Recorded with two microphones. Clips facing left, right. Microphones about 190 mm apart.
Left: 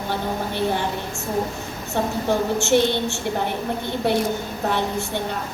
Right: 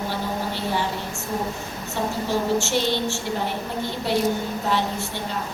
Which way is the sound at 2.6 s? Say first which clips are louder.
Left 4 dB; 55° left (ahead or behind).